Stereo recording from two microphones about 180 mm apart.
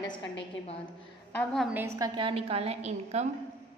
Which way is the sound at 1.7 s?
15° right (ahead or behind).